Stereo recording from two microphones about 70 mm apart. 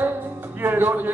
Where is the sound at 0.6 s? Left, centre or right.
Right.